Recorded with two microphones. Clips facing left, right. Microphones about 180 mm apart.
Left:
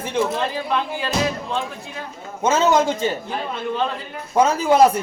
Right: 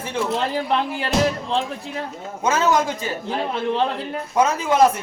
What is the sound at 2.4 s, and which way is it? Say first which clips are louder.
Speech: left 2 dB; 25° left (ahead or behind).